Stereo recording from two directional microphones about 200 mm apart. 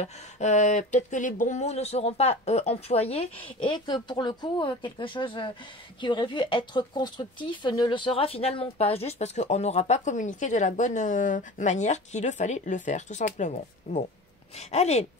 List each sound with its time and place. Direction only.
0.0 s speech: 35° left (ahead or behind)